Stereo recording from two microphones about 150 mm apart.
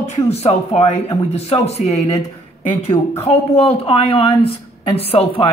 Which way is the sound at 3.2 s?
40° left (ahead or behind).